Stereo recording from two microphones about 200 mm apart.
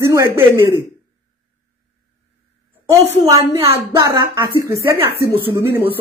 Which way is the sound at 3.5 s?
30° right (ahead or behind).